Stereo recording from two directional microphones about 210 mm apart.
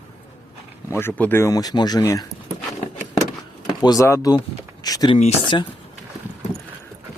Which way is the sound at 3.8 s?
15° left (ahead or behind).